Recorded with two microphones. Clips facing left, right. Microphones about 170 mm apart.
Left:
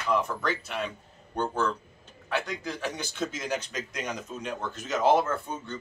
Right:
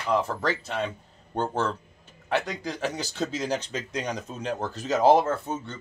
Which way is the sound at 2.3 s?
35° right (ahead or behind).